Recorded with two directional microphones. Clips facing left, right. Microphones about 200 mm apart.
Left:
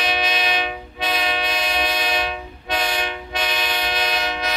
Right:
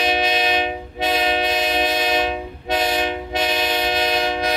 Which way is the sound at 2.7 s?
45° right (ahead or behind).